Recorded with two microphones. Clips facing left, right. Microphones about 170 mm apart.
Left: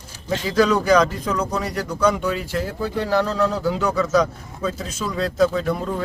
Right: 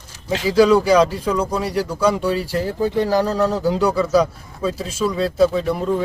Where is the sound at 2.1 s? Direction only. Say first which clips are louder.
Right 3 dB; 35° right (ahead or behind).